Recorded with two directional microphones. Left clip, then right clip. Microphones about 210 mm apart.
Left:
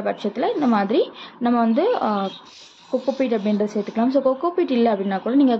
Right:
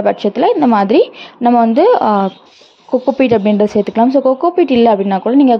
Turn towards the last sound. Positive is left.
turn(degrees=-30)  # may be behind; listen again after turning